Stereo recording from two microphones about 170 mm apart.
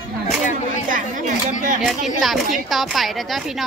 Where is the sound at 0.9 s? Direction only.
50° right (ahead or behind).